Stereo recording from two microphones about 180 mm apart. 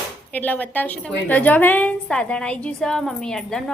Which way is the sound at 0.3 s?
10° left (ahead or behind).